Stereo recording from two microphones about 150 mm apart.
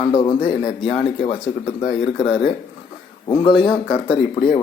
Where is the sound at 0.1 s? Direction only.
30° left (ahead or behind).